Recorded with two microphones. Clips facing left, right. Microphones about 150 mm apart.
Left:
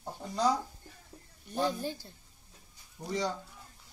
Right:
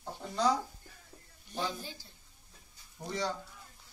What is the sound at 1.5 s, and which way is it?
Speech, 50° left (ahead or behind).